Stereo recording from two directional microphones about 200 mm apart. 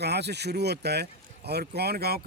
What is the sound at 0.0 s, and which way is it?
Speech, 55° right (ahead or behind).